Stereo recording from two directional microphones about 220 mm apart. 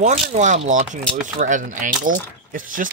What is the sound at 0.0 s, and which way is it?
Speech, 35° right (ahead or behind).